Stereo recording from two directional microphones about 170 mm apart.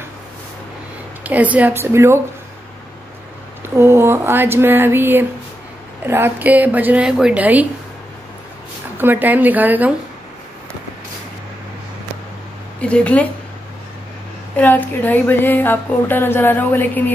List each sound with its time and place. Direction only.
1.2 s a woman's voice: 10° right (ahead or behind)
3.7 s a woman's voice: 15° right (ahead or behind)
8.9 s a woman's voice: 10° right (ahead or behind)
12.8 s speech: 5° left (ahead or behind)
14.6 s speech: 10° left (ahead or behind)